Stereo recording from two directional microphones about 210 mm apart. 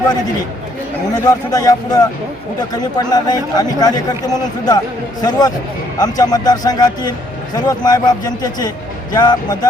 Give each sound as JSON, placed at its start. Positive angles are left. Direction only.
{"t": 1.1, "sound": "a man's voice", "side_deg": 20}